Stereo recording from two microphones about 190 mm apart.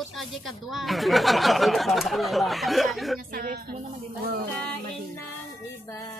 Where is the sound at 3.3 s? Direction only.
50° right (ahead or behind).